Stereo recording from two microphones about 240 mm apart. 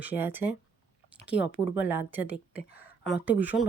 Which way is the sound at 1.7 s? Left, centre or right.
Centre.